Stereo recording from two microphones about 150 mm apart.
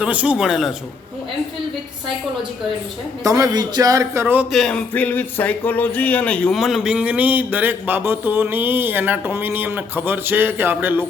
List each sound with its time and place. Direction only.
0.0 s speech: 10° right (ahead or behind)
3.2 s a man's voice: 20° right (ahead or behind)
4.5 s speech: 5° left (ahead or behind); by 11.0 s 15° right (ahead or behind)